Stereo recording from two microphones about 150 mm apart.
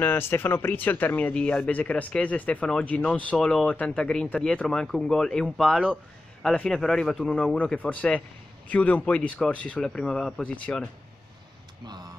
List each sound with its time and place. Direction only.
0.0 s speech: 15° left (ahead or behind)
11.8 s speech: 30° right (ahead or behind)